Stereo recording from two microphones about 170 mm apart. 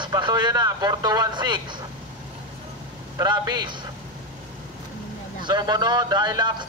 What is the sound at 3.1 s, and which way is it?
Speech, 20° right (ahead or behind).